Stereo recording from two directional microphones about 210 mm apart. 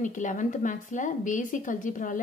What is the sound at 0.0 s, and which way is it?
A woman's voice, 35° left (ahead or behind).